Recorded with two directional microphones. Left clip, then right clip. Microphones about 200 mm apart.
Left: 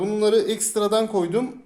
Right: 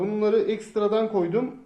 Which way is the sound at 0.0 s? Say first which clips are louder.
Left 3 dB; 30° left (ahead or behind).